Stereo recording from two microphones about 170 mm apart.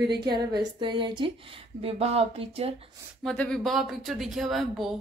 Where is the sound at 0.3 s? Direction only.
25° right (ahead or behind).